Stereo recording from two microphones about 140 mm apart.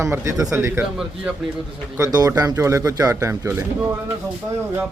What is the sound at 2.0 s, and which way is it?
Speech, 25° right (ahead or behind).